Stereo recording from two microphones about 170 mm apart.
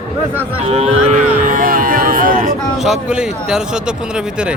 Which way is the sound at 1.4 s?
55° right (ahead or behind).